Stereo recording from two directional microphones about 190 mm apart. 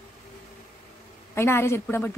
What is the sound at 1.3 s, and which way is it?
Speech, 15° left (ahead or behind).